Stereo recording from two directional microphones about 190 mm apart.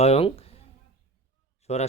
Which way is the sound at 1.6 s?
35° left (ahead or behind).